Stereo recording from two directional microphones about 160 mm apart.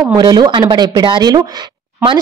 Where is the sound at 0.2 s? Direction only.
25° right (ahead or behind).